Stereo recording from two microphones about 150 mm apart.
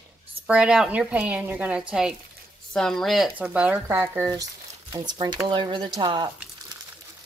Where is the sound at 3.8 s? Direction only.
20° right (ahead or behind).